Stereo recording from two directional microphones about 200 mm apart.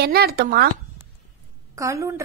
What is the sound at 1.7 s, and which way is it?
Speech, 15° right (ahead or behind).